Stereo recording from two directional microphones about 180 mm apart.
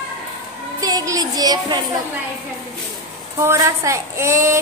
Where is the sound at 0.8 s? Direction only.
20° right (ahead or behind).